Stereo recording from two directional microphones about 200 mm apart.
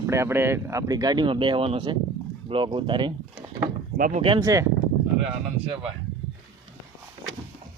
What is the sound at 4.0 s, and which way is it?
Speech, 40° right (ahead or behind).